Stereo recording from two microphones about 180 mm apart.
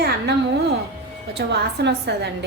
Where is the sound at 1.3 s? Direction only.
70° right (ahead or behind).